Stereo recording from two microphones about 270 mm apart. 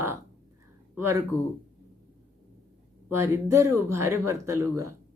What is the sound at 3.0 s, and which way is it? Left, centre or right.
Speech, centre.